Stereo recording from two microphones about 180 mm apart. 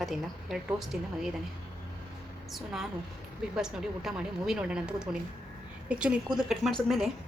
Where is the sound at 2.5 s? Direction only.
Centre (ahead or behind).